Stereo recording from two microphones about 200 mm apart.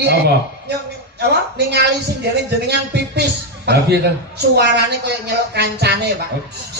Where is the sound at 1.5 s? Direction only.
55° right (ahead or behind).